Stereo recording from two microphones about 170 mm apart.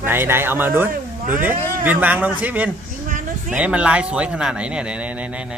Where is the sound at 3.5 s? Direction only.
10° right (ahead or behind).